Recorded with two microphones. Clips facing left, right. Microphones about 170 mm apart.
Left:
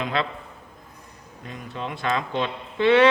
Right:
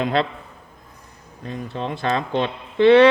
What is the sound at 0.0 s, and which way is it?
Speech, 35° right (ahead or behind).